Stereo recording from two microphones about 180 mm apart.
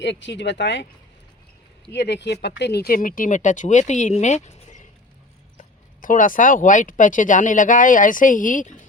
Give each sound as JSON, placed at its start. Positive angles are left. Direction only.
{"t": 0.0, "sound": "speech", "side_deg": 75}
{"t": 1.9, "sound": "speech", "side_deg": 70}